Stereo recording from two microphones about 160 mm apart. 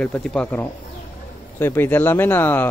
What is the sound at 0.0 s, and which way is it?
Speech, 5° left (ahead or behind).